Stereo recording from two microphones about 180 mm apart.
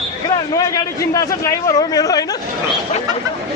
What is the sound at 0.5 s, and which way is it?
A man's voice, 20° left (ahead or behind).